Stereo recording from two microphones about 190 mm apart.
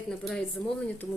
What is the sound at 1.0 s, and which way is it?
Speech, 20° left (ahead or behind).